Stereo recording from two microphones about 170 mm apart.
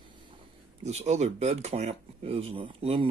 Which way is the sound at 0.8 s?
40° right (ahead or behind).